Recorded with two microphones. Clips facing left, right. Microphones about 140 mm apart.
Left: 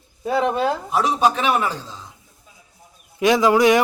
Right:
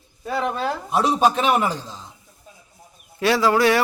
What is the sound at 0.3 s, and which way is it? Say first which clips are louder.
Speech: left 4 dB; 20° left (ahead or behind).